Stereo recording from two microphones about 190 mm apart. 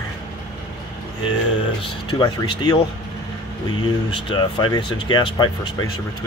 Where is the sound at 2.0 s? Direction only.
25° left (ahead or behind).